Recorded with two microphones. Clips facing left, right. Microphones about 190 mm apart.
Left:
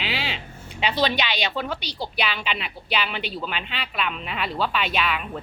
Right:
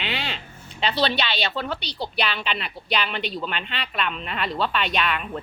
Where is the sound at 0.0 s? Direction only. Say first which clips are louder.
Left 1 dB; 5° left (ahead or behind).